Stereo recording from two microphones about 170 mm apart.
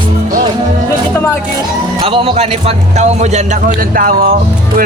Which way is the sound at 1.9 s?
30° right (ahead or behind).